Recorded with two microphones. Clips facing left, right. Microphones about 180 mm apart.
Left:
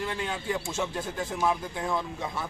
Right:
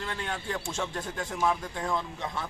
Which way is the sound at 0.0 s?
10° left (ahead or behind).